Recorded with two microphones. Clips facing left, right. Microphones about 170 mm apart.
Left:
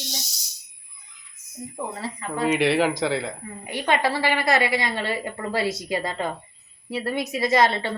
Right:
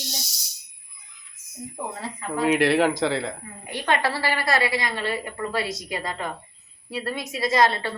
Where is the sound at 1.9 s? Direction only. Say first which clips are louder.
Right 2 dB; centre (ahead or behind).